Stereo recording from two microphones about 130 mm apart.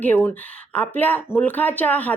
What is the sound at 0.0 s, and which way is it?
Speech, 15° left (ahead or behind).